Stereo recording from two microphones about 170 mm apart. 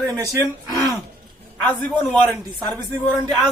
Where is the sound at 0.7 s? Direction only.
20° right (ahead or behind).